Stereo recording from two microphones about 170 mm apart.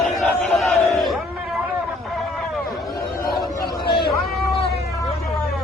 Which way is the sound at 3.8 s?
65° left (ahead or behind).